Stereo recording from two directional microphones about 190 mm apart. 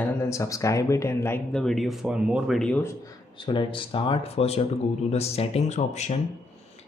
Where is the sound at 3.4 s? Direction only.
25° left (ahead or behind).